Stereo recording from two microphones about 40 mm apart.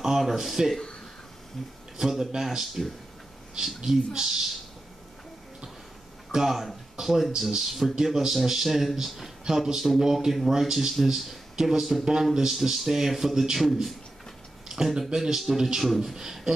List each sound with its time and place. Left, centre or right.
0.0 s speech: centre
2.0 s speech: centre
6.3 s speech: centre
14.7 s a sound: centre
15.1 s speech: centre